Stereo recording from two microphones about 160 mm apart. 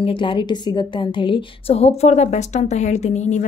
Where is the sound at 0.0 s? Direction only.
35° left (ahead or behind).